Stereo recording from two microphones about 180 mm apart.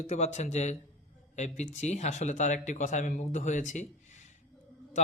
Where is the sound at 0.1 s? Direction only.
40° left (ahead or behind).